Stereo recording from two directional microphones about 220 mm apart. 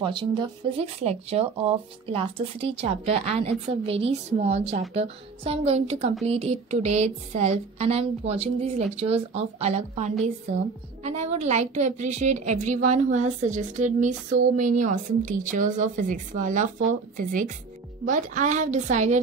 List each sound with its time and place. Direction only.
0.0 s a woman's voice: 20° right (ahead or behind)